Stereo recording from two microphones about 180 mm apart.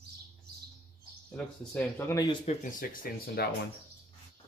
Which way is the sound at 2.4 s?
50° left (ahead or behind).